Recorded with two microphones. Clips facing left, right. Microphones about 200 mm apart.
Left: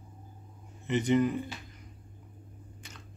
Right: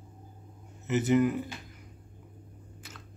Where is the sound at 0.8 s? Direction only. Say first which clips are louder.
Right 1 dB; 5° right (ahead or behind).